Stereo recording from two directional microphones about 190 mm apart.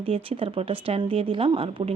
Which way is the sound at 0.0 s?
30° right (ahead or behind).